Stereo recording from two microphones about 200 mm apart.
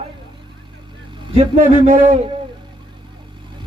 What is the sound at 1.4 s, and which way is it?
Speech, 35° right (ahead or behind).